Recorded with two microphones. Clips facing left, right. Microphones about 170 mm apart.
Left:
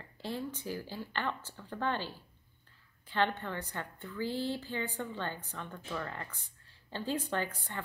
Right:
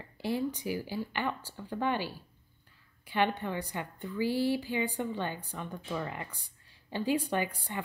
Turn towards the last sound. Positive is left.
turn(degrees=-10)  # may be behind; listen again after turning